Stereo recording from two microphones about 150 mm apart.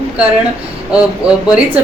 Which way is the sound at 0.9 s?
5° right (ahead or behind).